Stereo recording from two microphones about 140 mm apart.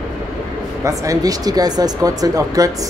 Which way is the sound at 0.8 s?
25° right (ahead or behind).